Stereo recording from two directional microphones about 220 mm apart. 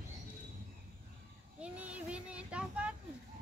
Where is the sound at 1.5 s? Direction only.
5° right (ahead or behind).